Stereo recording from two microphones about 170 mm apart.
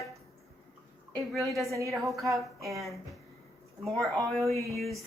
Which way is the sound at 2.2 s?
20° right (ahead or behind).